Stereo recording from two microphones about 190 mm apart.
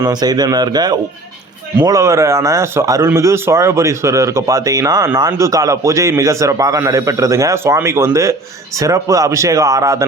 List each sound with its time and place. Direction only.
0.0 s speech: 20° right (ahead or behind)